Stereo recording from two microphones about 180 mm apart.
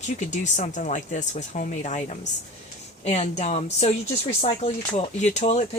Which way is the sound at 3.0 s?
35° left (ahead or behind).